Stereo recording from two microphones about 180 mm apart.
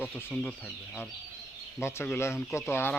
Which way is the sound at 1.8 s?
15° left (ahead or behind).